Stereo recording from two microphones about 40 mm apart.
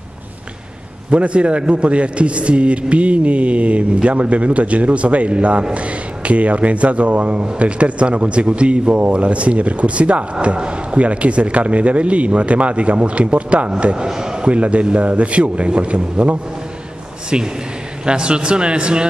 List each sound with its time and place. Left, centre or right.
1.1 s a man's voice: right
14.0 s speech: centre
14.5 s a man's voice: right